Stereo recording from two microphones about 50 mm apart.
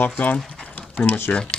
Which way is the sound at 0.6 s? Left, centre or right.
Left.